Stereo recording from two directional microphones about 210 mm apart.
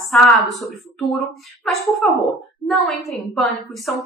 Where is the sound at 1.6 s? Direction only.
Centre (ahead or behind).